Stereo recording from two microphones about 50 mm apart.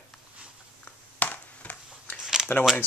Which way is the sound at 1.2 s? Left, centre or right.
Left.